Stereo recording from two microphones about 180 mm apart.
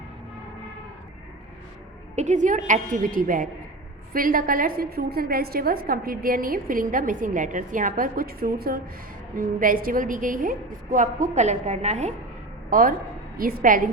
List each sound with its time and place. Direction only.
2.1 s a woman's voice: 40° right (ahead or behind)
12.7 s a woman's voice: 50° right (ahead or behind)